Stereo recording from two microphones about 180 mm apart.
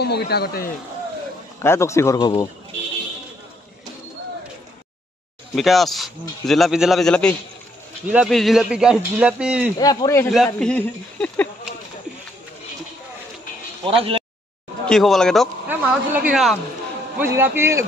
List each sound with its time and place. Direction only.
0.0 s a man's voice: 65° left (ahead or behind)
1.6 s speech: 15° left (ahead or behind)
5.6 s a man's voice: centre (ahead or behind)
9.8 s a man's voice: 20° left (ahead or behind)
10.3 s a man's voice: centre (ahead or behind)
13.8 s speech: 30° right (ahead or behind)
14.9 s a man's voice: centre (ahead or behind); by 17.8 s 15° right (ahead or behind)